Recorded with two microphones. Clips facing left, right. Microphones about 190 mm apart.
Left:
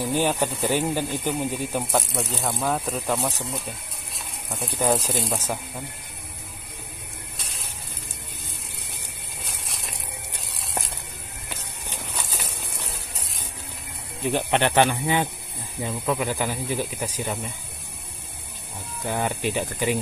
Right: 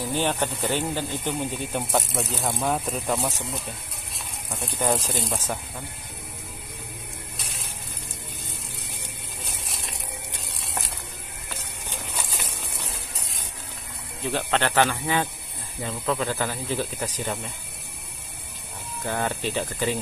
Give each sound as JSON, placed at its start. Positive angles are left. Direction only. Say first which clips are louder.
{"t": 0.0, "sound": "speech", "louder": "left 2 dB", "side_deg": 10}
{"t": 4.5, "sound": "speech", "louder": "left 2 dB", "side_deg": 0}
{"t": 14.2, "sound": "speech", "louder": "left 3 dB", "side_deg": 15}
{"t": 19.0, "sound": "speech", "louder": "left 2 dB", "side_deg": 15}